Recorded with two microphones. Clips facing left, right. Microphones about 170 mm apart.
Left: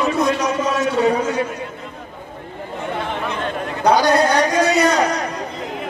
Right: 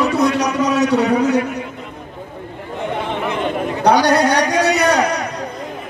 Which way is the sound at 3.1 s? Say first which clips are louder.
Right 4 dB; 20° right (ahead or behind).